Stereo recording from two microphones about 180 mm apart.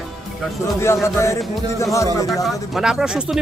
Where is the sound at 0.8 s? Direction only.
15° left (ahead or behind).